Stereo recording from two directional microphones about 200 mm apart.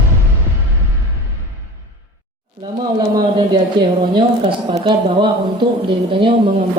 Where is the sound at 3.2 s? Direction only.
20° right (ahead or behind).